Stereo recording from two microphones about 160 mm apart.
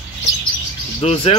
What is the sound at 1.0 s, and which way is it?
Speech, 40° left (ahead or behind).